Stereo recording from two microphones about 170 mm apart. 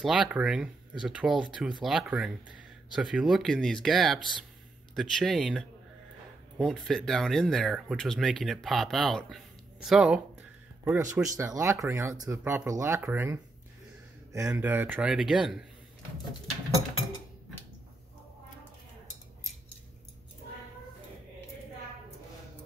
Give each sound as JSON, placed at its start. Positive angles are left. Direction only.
{"t": 0.0, "sound": "speech", "side_deg": -5}
{"t": 14.4, "sound": "speech", "side_deg": -10}